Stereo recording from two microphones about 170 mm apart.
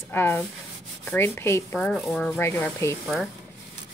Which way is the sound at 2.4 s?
15° left (ahead or behind).